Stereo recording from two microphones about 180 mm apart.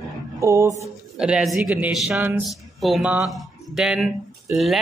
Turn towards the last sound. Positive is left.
turn(degrees=0)  # may be behind; listen again after turning